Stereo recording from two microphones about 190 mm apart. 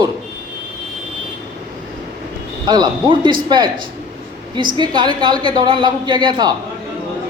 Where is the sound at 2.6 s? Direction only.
20° right (ahead or behind).